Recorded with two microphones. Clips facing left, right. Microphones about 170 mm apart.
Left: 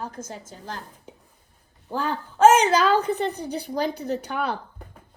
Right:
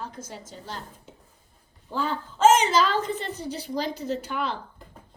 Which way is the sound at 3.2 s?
55° left (ahead or behind).